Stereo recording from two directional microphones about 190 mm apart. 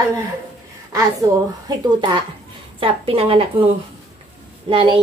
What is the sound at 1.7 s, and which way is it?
A woman's voice, 25° right (ahead or behind).